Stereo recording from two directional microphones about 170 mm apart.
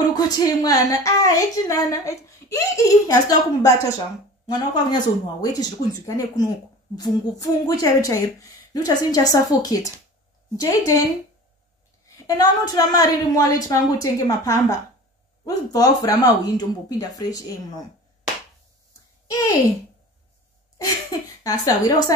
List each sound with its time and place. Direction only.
0.1 s a woman's voice: 25° left (ahead or behind)
12.3 s a woman's voice: 20° left (ahead or behind)
20.7 s a woman's voice: 20° left (ahead or behind)